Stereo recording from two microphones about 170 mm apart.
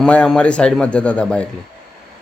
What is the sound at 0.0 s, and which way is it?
A man's voice, 5° left (ahead or behind).